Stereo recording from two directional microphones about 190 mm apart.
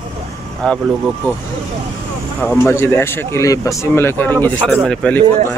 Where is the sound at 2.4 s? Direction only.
10° left (ahead or behind).